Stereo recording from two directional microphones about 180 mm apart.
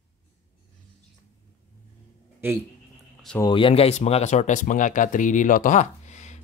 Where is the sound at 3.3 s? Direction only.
25° left (ahead or behind).